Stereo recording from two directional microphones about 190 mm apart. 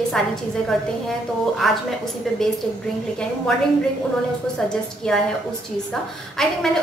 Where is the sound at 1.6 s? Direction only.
Centre (ahead or behind).